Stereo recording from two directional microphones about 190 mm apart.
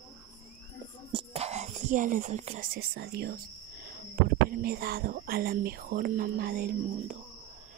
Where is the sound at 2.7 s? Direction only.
55° right (ahead or behind).